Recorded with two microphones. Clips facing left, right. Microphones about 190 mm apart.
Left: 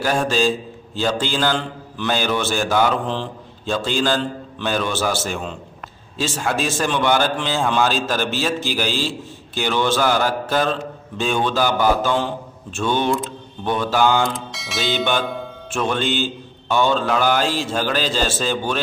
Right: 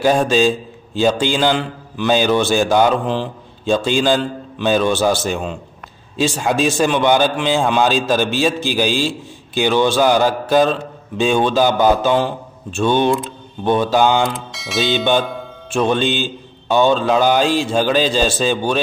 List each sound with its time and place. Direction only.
0.0 s a man's voice: 20° right (ahead or behind)
14.5 s music: centre (ahead or behind)
15.7 s a man's voice: 20° right (ahead or behind)